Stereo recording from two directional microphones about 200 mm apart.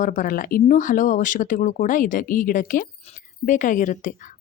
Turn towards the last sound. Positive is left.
turn(degrees=40)  # may be behind; listen again after turning